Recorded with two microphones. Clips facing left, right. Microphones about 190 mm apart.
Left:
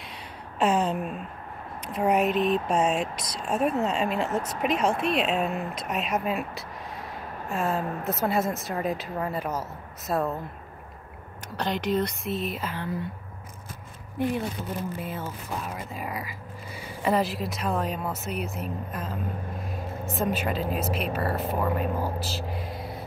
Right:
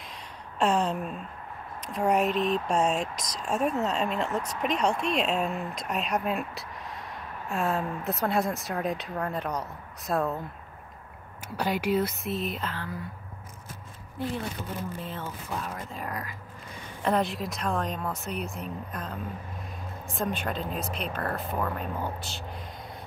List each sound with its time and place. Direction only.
0.6 s a sound: 5° left (ahead or behind)
1.9 s speech: centre (ahead or behind)
11.4 s speech: 10° right (ahead or behind)
12.7 s speech: 20° left (ahead or behind)
15.0 s speech: 10° left (ahead or behind)